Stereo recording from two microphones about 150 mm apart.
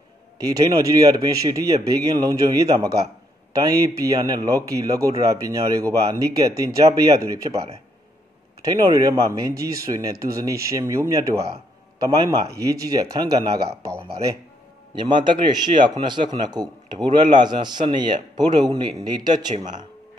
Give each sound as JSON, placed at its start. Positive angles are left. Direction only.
{"t": 0.4, "sound": "speech", "side_deg": -25}